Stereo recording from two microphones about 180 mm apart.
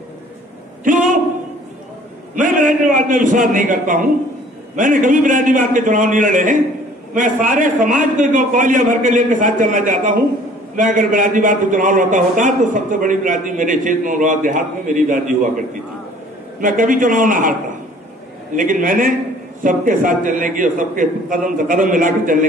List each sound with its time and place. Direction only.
2.3 s a man's voice: 45° right (ahead or behind)